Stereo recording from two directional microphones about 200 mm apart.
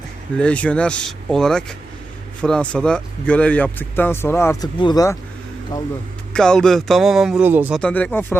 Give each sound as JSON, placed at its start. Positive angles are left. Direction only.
{"t": 0.3, "sound": "speech", "side_deg": 5}
{"t": 6.3, "sound": "speech", "side_deg": 5}
{"t": 7.8, "sound": "speech", "side_deg": 5}